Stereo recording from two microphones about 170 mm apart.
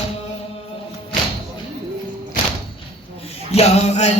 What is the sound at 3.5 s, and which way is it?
Music, 40° left (ahead or behind).